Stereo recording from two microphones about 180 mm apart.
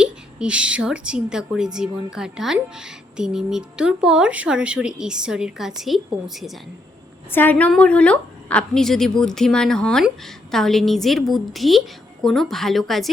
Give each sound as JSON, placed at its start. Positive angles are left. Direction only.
{"t": 0.0, "sound": "a woman's voice", "side_deg": -5}
{"t": 7.3, "sound": "a woman's voice", "side_deg": 10}